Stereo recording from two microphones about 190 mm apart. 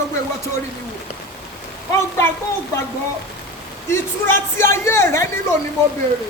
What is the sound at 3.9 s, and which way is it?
Speech, 15° left (ahead or behind).